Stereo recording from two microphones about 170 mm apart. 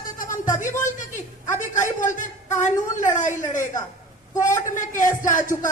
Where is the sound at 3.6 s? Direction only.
15° left (ahead or behind).